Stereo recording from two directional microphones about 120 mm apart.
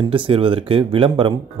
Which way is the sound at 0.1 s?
45° right (ahead or behind).